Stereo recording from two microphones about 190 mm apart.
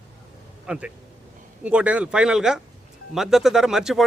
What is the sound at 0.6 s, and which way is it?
Speech, 5° right (ahead or behind).